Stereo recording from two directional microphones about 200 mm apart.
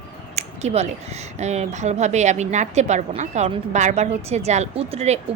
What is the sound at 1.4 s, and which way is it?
A woman's voice, 35° right (ahead or behind).